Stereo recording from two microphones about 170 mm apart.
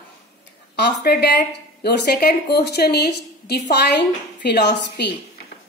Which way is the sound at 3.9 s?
90° left.